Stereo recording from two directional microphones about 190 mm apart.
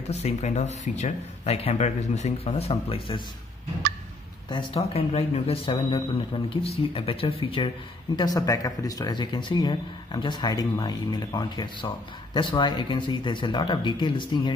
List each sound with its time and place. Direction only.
0.0 s speech: 35° left (ahead or behind)
4.5 s speech: 30° left (ahead or behind)